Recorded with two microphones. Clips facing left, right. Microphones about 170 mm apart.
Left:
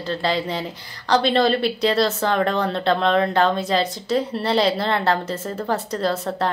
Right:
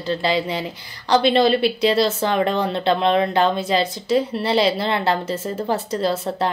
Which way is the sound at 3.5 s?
5° right (ahead or behind).